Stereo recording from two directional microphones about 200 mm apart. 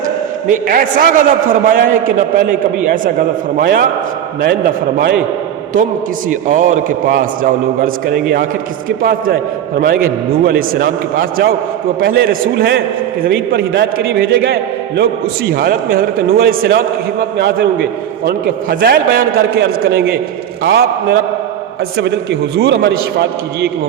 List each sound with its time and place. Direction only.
0.7 s a man's voice: 45° right (ahead or behind)
4.9 s a man's voice: 50° right (ahead or behind)
6.2 s a man's voice: 40° right (ahead or behind)